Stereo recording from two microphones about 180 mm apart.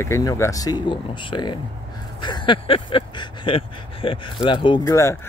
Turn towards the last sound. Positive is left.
turn(degrees=25)  # may be behind; listen again after turning